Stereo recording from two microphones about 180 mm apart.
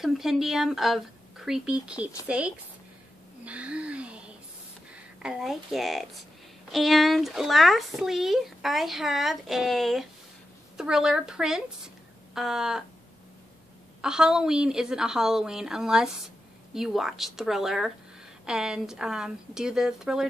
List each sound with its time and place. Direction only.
0.0 s speech: centre (ahead or behind)
3.4 s a sound: 5° right (ahead or behind)
5.2 s speech: 5° right (ahead or behind)
14.0 s speech: 5° right (ahead or behind)